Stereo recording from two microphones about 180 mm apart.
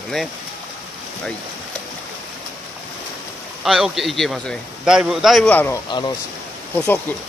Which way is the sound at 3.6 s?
Centre (ahead or behind).